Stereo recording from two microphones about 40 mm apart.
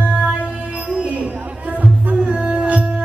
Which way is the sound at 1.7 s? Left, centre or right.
Right.